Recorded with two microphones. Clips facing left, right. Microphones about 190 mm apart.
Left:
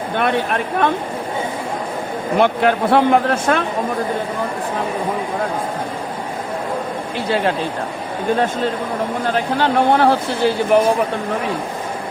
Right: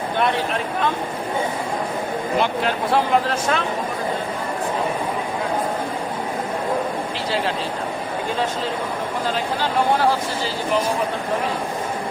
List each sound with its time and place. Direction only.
0.2 s speech: 60° left (ahead or behind)
2.4 s speech: 55° left (ahead or behind)
9.2 s speech: 60° left (ahead or behind)